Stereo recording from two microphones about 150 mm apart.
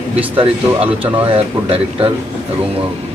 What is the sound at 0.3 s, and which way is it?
Speech, 40° right (ahead or behind).